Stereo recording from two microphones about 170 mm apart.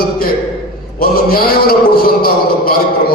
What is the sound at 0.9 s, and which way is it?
A man's voice, 60° left (ahead or behind).